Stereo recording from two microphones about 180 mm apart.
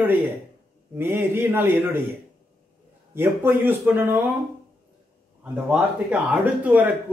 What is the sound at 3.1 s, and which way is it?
Speech, 15° right (ahead or behind).